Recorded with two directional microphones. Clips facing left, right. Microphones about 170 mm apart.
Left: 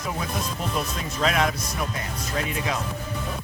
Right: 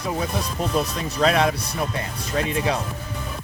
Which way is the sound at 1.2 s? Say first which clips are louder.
Right 4 dB; 35° right (ahead or behind).